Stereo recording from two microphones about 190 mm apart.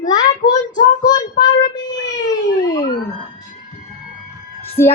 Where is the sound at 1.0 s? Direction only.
20° left (ahead or behind).